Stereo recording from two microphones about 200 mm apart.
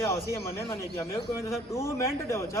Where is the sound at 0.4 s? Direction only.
15° left (ahead or behind).